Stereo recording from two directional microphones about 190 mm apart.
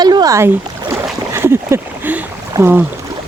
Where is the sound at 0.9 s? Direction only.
15° right (ahead or behind).